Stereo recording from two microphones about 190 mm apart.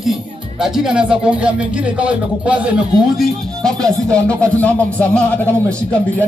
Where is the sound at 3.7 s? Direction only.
20° right (ahead or behind).